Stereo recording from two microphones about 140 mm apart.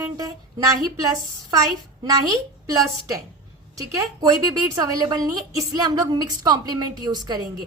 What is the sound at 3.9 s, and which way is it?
A woman's voice, 25° right (ahead or behind).